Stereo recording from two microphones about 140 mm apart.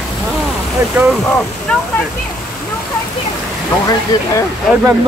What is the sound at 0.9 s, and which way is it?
Speech, centre (ahead or behind).